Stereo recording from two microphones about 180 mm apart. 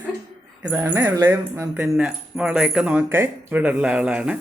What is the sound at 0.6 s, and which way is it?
Speech, 10° right (ahead or behind).